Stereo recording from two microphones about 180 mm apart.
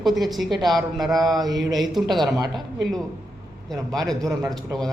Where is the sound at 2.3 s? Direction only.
20° right (ahead or behind).